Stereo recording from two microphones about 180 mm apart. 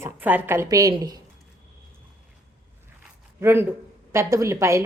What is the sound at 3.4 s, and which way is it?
A woman's voice, 15° right (ahead or behind).